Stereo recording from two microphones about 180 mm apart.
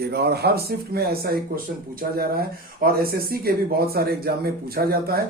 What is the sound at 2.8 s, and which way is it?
A man's voice, 55° right (ahead or behind).